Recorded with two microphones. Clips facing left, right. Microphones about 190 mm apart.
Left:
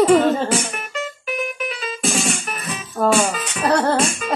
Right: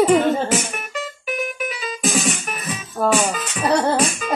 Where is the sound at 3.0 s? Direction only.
5° right (ahead or behind).